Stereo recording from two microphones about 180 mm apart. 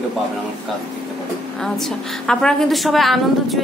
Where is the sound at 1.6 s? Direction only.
5° left (ahead or behind).